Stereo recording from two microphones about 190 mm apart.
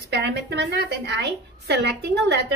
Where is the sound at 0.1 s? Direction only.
60° right (ahead or behind).